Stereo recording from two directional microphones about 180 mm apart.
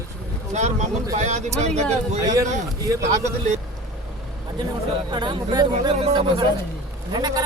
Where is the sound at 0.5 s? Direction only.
40° right (ahead or behind).